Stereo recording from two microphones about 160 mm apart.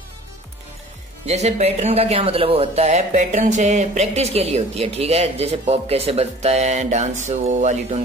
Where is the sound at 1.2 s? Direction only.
45° right (ahead or behind).